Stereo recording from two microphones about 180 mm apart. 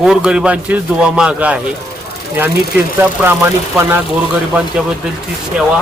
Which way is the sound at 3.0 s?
10° right (ahead or behind).